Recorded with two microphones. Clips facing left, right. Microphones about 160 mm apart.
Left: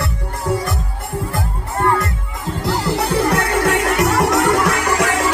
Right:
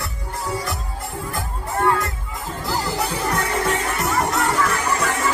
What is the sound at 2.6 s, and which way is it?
Music, 75° left (ahead or behind).